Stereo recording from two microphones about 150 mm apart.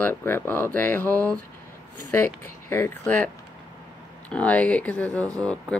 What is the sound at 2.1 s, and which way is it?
Speech, 15° left (ahead or behind).